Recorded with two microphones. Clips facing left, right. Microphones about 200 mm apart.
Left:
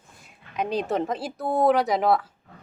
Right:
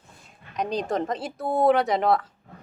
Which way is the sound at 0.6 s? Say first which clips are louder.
Left 1 dB; 5° left (ahead or behind).